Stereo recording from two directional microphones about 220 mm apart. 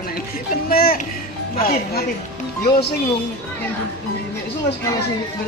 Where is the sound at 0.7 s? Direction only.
40° left (ahead or behind).